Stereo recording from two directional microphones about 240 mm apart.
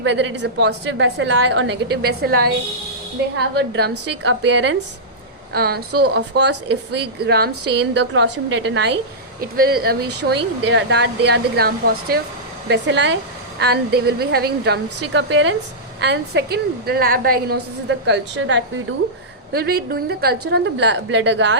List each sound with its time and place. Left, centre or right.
0.0 s speech: right